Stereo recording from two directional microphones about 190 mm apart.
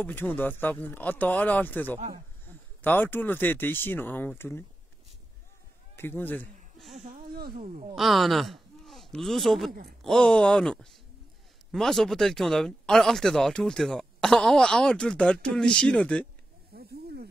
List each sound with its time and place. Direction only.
0.0 s speech: 10° left (ahead or behind)
5.9 s speech: 10° left (ahead or behind)
7.2 s a sound: 55° right (ahead or behind)
7.9 s speech: centre (ahead or behind)
9.7 s speech: 50° right (ahead or behind)
10.0 s speech: 5° left (ahead or behind)
16.7 s snake: 55° right (ahead or behind)